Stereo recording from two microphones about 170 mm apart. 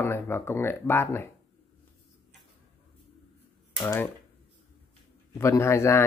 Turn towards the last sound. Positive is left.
turn(degrees=15)  # may be behind; listen again after turning